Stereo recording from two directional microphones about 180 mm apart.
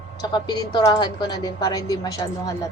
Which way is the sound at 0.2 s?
20° left (ahead or behind).